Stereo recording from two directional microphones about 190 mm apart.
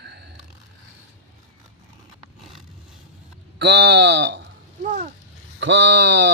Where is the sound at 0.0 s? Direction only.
60° right (ahead or behind).